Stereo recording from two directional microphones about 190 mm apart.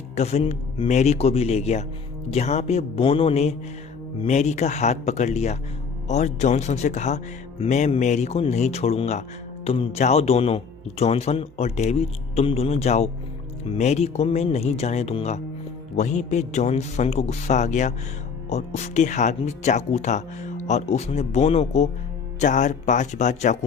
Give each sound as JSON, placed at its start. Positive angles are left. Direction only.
{"t": 0.2, "sound": "speech", "side_deg": 35}